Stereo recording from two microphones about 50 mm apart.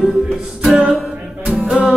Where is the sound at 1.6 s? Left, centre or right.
Right.